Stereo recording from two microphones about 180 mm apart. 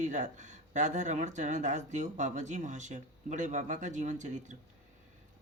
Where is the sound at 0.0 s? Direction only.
45° right (ahead or behind).